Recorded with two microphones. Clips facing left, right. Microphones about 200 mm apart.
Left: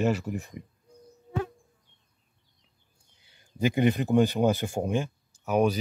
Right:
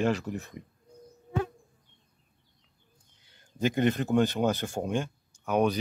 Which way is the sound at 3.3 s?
10° left (ahead or behind).